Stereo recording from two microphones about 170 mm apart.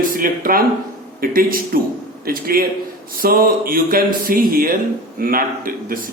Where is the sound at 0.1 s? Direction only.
55° right (ahead or behind).